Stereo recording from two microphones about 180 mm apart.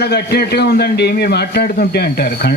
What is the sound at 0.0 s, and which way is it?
A man's voice, 65° left (ahead or behind).